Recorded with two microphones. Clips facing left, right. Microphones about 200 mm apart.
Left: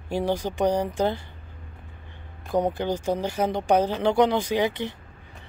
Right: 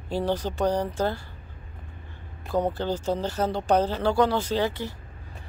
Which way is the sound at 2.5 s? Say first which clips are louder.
Left 1 dB; 15° left (ahead or behind).